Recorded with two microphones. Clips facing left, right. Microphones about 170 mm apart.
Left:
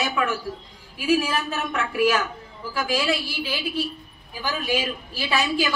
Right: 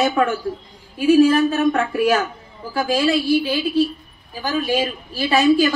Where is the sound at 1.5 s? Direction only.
45° right (ahead or behind).